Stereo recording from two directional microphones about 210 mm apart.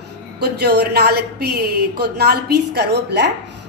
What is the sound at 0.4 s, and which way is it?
A woman's voice, 50° right (ahead or behind).